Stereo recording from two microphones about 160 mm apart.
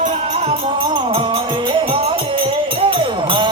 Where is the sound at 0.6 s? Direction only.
30° right (ahead or behind).